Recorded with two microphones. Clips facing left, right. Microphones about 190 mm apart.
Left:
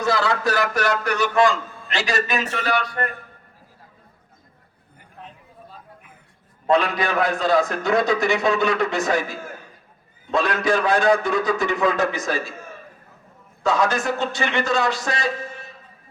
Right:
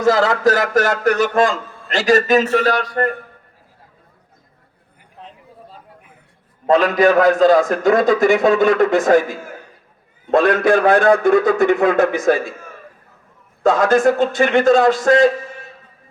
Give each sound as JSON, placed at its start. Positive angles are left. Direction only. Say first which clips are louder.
{"t": 0.0, "sound": "a man's voice", "louder": "right 7 dB", "side_deg": -45}
{"t": 6.7, "sound": "a man's voice", "louder": "right 7 dB", "side_deg": -45}
{"t": 10.3, "sound": "a man's voice", "louder": "right 7 dB", "side_deg": -55}
{"t": 13.6, "sound": "a man's voice", "louder": "right 7 dB", "side_deg": -50}